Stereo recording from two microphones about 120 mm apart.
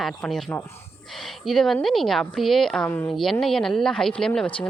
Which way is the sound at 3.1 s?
Centre (ahead or behind).